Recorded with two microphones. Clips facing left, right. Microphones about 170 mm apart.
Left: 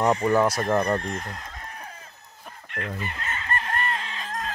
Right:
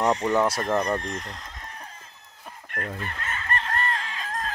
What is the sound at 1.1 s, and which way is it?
Speech, 50° left (ahead or behind).